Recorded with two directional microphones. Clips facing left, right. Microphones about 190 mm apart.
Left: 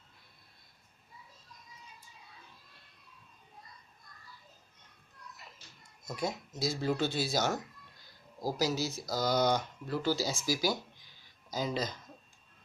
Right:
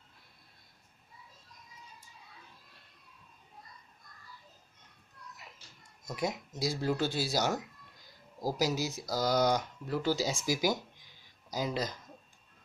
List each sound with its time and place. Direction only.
6.1 s speech: 15° right (ahead or behind)